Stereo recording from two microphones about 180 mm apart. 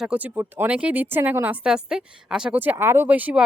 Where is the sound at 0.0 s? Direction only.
10° right (ahead or behind).